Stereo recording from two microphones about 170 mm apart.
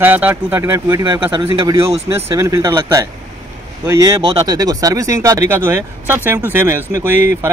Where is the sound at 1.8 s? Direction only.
15° right (ahead or behind).